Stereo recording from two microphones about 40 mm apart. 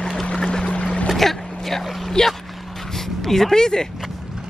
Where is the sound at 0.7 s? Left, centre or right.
Left.